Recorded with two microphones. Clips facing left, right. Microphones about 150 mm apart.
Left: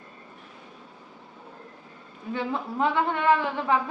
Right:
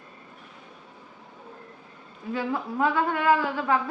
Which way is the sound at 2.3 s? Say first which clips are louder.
Right 1 dB; 25° left (ahead or behind).